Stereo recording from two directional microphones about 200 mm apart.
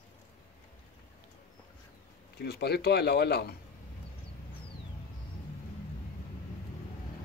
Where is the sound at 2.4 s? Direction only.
55° left (ahead or behind).